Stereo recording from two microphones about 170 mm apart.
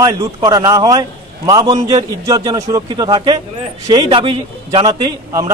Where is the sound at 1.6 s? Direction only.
35° right (ahead or behind).